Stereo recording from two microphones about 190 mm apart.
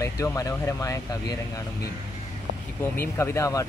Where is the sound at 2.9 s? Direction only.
15° left (ahead or behind).